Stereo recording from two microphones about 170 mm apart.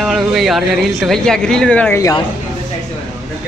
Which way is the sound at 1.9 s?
20° left (ahead or behind).